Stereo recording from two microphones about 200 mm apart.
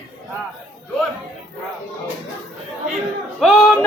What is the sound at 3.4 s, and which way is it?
Speech, 5° left (ahead or behind).